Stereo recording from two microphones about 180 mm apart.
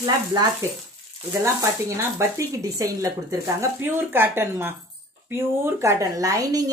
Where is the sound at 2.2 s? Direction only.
15° right (ahead or behind).